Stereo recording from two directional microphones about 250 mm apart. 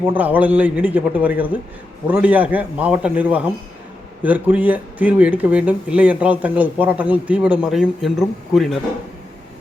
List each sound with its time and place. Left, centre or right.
0.1 s a man's voice: centre